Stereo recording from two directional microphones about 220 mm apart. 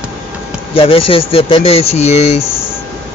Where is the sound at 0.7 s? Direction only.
25° left (ahead or behind).